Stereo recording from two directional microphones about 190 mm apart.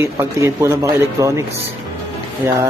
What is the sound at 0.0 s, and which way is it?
A man's voice, 15° right (ahead or behind).